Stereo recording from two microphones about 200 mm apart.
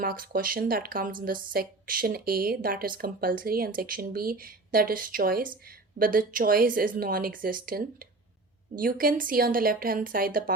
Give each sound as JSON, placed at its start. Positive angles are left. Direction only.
{"t": 0.0, "sound": "speech", "side_deg": -45}